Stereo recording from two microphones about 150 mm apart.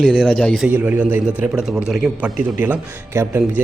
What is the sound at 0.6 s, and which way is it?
A man's voice, 10° right (ahead or behind).